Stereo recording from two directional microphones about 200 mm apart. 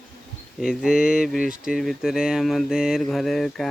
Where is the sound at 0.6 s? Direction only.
5° right (ahead or behind).